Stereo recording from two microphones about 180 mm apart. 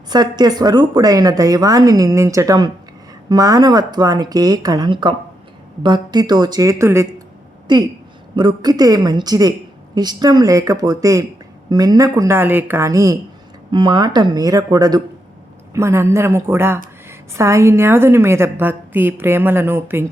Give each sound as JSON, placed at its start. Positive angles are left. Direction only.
{"t": 0.1, "sound": "a woman's voice", "side_deg": -25}